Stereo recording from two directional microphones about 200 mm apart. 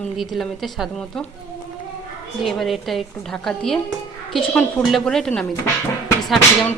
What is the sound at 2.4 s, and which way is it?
Speech, centre (ahead or behind).